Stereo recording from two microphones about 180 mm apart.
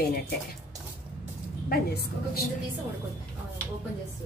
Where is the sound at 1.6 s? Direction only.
60° left (ahead or behind).